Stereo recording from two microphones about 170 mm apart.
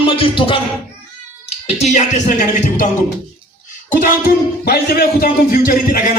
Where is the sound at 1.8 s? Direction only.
45° left (ahead or behind).